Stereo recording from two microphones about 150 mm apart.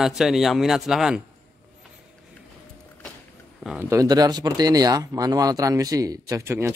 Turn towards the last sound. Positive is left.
turn(degrees=-15)  # may be behind; listen again after turning